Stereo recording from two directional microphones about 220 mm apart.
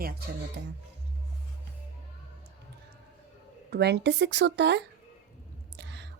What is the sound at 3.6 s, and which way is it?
A woman's voice, 50° right (ahead or behind).